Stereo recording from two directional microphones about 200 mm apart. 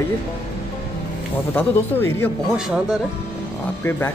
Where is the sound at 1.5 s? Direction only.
10° left (ahead or behind).